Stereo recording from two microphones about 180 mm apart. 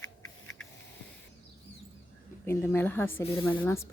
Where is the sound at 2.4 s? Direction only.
15° left (ahead or behind).